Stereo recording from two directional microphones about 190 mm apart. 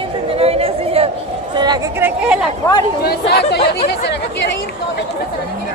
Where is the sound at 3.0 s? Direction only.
60° left (ahead or behind).